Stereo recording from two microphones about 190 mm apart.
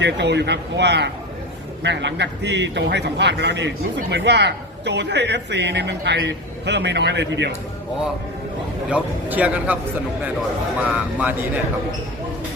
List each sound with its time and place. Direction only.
0.0 s a man's voice: 65° right (ahead or behind)
8.9 s a man's voice: 5° right (ahead or behind)
10.9 s a man's voice: 10° right (ahead or behind)